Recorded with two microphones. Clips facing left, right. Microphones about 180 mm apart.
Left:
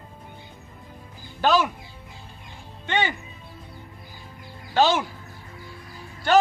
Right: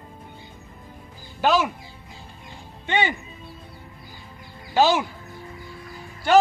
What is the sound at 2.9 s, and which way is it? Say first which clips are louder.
Music: right 2 dB; 15° right (ahead or behind).